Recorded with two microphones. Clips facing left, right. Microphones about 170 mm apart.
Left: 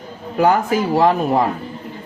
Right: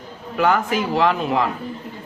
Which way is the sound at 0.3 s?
40° left (ahead or behind).